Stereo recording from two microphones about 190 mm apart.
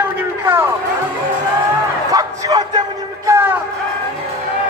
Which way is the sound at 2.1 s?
20° right (ahead or behind).